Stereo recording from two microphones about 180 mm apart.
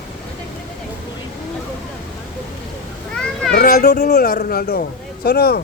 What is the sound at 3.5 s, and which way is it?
Speech, 55° left (ahead or behind).